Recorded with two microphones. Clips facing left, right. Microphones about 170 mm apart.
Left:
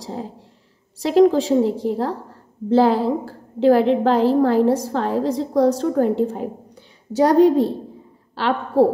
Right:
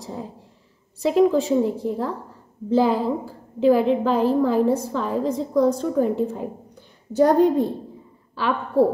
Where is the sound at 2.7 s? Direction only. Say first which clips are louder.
Left 3 dB; 75° left (ahead or behind).